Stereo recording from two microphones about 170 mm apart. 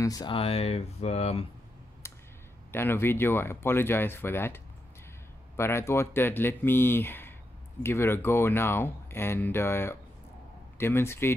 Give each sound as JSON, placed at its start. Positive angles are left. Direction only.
{"t": 0.0, "sound": "speech", "side_deg": 25}
{"t": 2.0, "sound": "a sound", "side_deg": 15}
{"t": 2.7, "sound": "speech", "side_deg": 15}
{"t": 5.6, "sound": "speech", "side_deg": 15}